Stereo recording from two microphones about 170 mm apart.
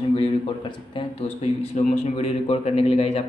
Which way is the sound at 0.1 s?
35° left (ahead or behind).